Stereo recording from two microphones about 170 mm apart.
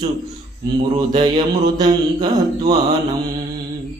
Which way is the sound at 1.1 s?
25° right (ahead or behind).